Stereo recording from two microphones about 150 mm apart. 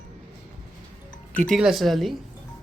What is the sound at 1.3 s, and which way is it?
Speech, 5° left (ahead or behind).